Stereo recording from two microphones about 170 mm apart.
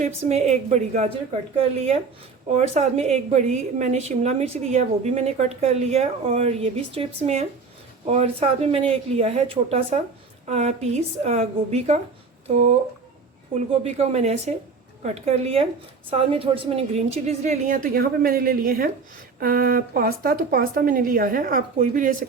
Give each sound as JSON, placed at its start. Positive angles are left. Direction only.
{"t": 0.0, "sound": "a woman's voice", "side_deg": -40}
{"t": 13.8, "sound": "a woman's voice", "side_deg": -40}